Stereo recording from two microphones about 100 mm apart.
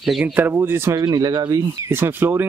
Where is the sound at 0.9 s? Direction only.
40° right (ahead or behind).